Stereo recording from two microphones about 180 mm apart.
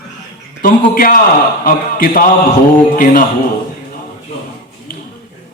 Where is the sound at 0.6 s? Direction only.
50° left (ahead or behind).